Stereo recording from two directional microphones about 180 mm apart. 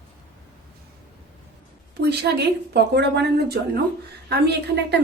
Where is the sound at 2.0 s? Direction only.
65° right (ahead or behind).